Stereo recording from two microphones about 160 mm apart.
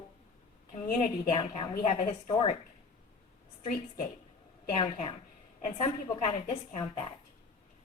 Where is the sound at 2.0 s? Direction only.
30° left (ahead or behind).